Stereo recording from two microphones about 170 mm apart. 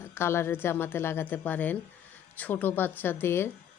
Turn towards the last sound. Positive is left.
turn(degrees=15)  # may be behind; listen again after turning